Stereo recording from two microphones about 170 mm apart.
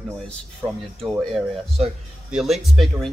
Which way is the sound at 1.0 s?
Centre (ahead or behind).